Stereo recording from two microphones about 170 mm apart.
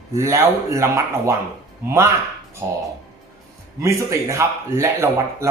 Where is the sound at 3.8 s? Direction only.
15° right (ahead or behind).